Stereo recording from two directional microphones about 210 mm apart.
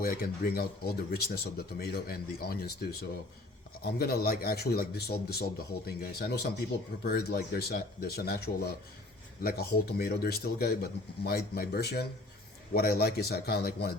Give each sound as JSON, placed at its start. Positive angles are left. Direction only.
{"t": 0.0, "sound": "speech", "side_deg": 45}
{"t": 3.8, "sound": "speech", "side_deg": 50}